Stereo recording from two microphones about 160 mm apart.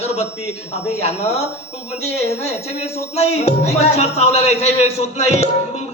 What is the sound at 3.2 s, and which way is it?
A man's voice, 45° left (ahead or behind).